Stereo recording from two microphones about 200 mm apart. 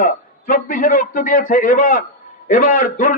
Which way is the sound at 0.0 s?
45° left (ahead or behind).